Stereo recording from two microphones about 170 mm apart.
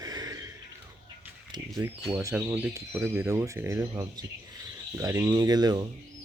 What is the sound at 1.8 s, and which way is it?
Speech, 15° right (ahead or behind).